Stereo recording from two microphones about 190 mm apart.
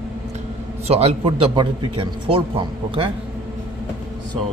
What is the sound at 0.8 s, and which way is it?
A man's voice, 35° right (ahead or behind).